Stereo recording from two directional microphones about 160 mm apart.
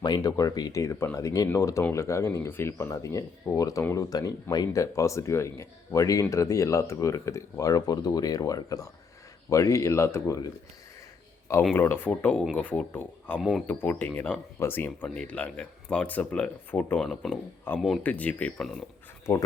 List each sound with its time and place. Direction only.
0.0 s speech: 25° left (ahead or behind)
11.7 s speech: 15° left (ahead or behind)